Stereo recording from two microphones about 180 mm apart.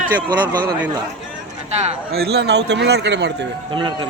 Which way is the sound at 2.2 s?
65° right (ahead or behind).